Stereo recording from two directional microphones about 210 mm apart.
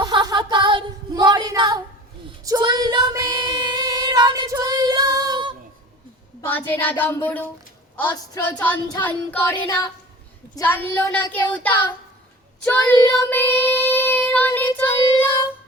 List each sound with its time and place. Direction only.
0.0 s a sound: 20° right (ahead or behind)
2.4 s female singing: 20° right (ahead or behind)
6.4 s speech: 10° left (ahead or behind)
12.6 s child singing: 10° left (ahead or behind)